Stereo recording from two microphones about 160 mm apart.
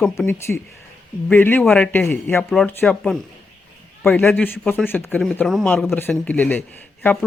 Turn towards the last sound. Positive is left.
turn(degrees=10)  # may be behind; listen again after turning